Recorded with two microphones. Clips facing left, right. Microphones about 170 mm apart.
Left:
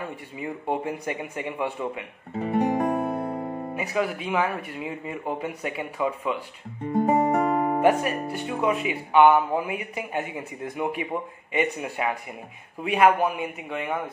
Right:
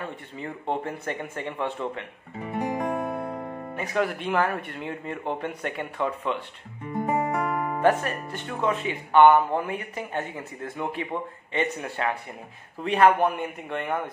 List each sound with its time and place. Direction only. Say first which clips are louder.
0.0 s speech: left 2 dB; 10° left (ahead or behind)
2.5 s music: left 4 dB; 45° left (ahead or behind)
3.2 s music: left 3 dB; 30° left (ahead or behind)
3.7 s speech: right 1 dB; 5° left (ahead or behind)
7.1 s music: left 4 dB; 40° left (ahead or behind)
7.8 s a man's voice: right 2 dB; 10° left (ahead or behind)